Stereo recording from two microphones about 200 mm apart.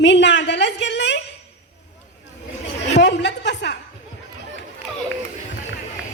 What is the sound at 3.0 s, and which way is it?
Speech, 60° left (ahead or behind).